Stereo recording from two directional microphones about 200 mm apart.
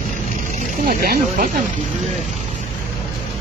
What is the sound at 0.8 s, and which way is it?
Speech, 45° right (ahead or behind).